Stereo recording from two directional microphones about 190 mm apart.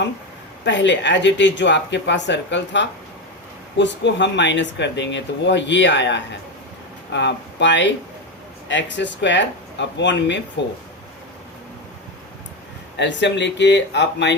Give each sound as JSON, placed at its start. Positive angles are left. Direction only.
{"t": 0.6, "sound": "speech", "side_deg": 70}
{"t": 13.0, "sound": "speech", "side_deg": 70}